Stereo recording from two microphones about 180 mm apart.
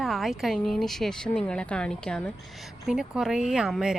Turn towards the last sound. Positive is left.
turn(degrees=-5)  # may be behind; listen again after turning